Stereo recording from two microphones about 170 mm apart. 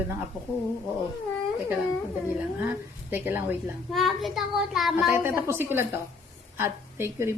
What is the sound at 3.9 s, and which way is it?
A child's voice, centre (ahead or behind).